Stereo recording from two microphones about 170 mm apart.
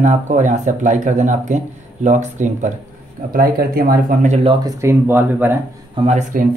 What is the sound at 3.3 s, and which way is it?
Speech, 60° right (ahead or behind).